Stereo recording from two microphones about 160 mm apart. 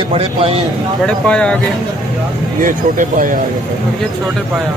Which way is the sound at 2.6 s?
60° right (ahead or behind).